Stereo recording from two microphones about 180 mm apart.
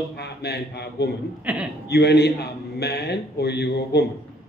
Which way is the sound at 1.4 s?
5° right (ahead or behind).